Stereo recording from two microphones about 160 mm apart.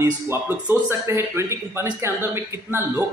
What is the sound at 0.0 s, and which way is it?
A man's voice, 15° right (ahead or behind).